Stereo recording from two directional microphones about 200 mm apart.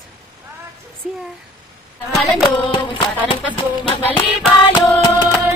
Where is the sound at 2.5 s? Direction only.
25° left (ahead or behind).